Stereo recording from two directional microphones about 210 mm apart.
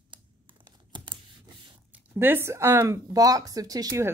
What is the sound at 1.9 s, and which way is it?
Speech, 10° right (ahead or behind).